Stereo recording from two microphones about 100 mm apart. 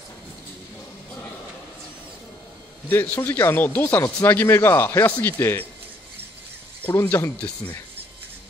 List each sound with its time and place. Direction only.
2.9 s speech: 20° left (ahead or behind)
6.9 s speech: 30° left (ahead or behind)
7.3 s speech: 10° left (ahead or behind)